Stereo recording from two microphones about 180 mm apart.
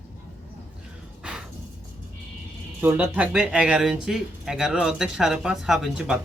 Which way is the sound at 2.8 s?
10° right (ahead or behind).